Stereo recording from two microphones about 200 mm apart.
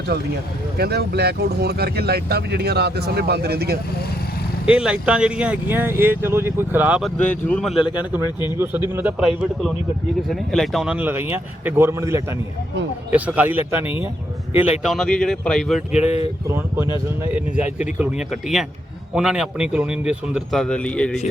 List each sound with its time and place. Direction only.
0.8 s speech: 50° right (ahead or behind)
4.6 s speech: 5° right (ahead or behind)
7.4 s a man's voice: 5° left (ahead or behind)
16.0 s speech: 30° left (ahead or behind)
17.3 s a man's voice: 5° right (ahead or behind)